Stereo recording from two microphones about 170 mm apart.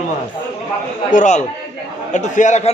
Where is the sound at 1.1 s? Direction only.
45° left (ahead or behind).